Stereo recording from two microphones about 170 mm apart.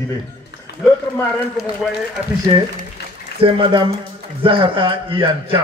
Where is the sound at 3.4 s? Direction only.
30° right (ahead or behind).